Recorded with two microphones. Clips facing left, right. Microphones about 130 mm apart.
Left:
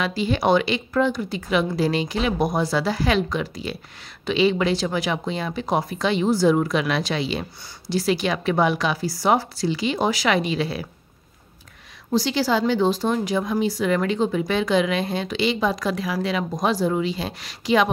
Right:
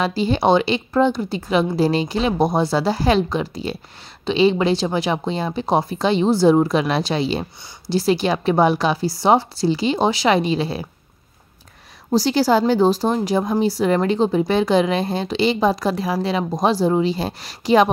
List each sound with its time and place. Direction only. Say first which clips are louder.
0.0 s speech: right 4 dB; 30° right (ahead or behind)
12.1 s speech: right 5 dB; 40° right (ahead or behind)